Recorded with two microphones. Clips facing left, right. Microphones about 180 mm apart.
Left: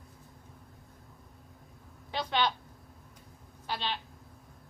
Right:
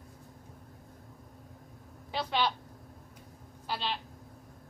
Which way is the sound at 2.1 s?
5° right (ahead or behind).